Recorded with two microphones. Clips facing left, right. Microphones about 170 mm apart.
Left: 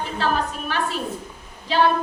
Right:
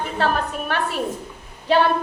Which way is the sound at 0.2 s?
60° right (ahead or behind).